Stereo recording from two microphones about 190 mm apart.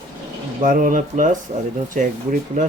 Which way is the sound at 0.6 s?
45° right (ahead or behind).